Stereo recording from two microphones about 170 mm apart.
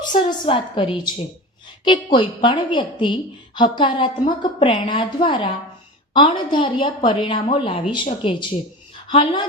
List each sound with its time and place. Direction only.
0.2 s a woman's voice: 30° left (ahead or behind)